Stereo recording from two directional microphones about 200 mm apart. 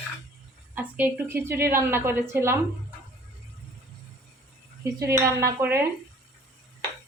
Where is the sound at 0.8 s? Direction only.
10° right (ahead or behind).